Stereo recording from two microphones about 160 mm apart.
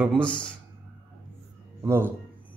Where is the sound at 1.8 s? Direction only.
15° right (ahead or behind).